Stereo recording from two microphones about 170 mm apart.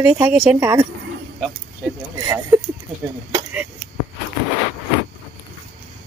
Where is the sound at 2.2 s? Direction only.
20° right (ahead or behind).